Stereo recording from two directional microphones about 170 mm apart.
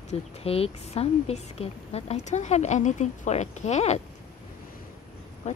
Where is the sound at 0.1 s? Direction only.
35° left (ahead or behind).